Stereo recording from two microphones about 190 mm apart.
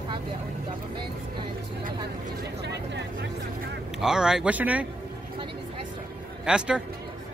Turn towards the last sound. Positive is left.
turn(degrees=-5)  # may be behind; listen again after turning